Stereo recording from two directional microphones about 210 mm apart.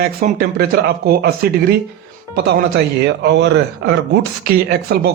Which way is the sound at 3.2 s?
55° right (ahead or behind).